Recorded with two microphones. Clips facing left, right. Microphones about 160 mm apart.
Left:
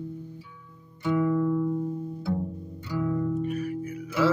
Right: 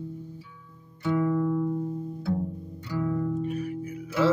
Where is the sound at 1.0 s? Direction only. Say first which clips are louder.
Left 1 dB; 5° left (ahead or behind).